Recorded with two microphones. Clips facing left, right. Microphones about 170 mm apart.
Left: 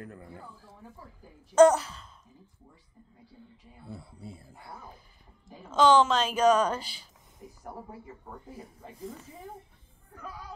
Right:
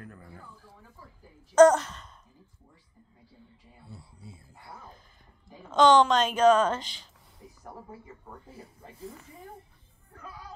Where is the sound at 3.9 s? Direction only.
60° left (ahead or behind).